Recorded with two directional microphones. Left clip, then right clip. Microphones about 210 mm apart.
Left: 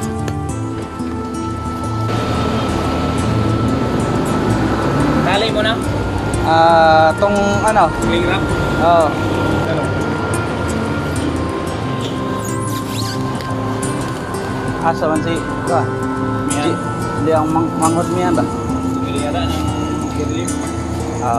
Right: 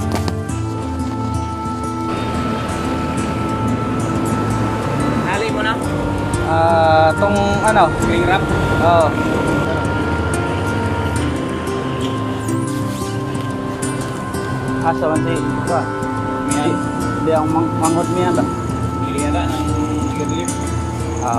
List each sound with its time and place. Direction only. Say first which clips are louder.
6.5 s speech: left 3 dB; 5° left (ahead or behind)
14.9 s speech: left 1 dB; centre (ahead or behind)
17.3 s speech: left 1 dB; centre (ahead or behind)